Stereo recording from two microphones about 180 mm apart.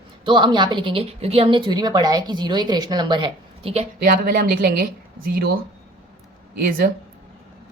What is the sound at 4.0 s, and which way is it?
A woman's voice, 55° right (ahead or behind).